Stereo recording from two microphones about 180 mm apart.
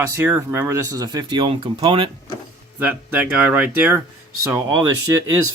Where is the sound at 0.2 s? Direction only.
10° right (ahead or behind); by 2.0 s 30° right (ahead or behind).